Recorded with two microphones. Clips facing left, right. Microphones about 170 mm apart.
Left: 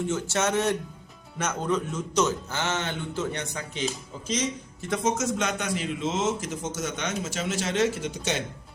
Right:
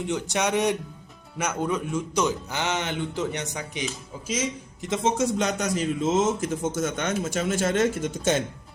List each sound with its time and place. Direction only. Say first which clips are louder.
0.1 s speech: right 3 dB; 15° right (ahead or behind)
4.8 s a man's voice: right 2 dB; 25° right (ahead or behind); by 8.4 s 50° right (ahead or behind)